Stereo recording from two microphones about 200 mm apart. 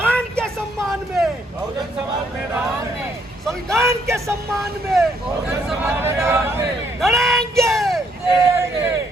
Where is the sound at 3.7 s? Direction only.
15° right (ahead or behind).